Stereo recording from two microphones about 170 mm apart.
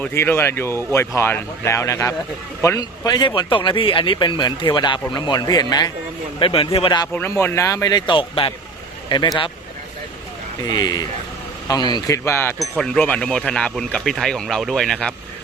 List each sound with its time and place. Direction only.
0.0 s speech: 15° left (ahead or behind)
7.1 s speech: 15° left (ahead or behind)
10.7 s speech: 25° left (ahead or behind)
12.5 s speech: 5° left (ahead or behind)